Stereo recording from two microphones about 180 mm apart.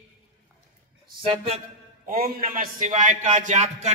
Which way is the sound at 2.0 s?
55° right (ahead or behind).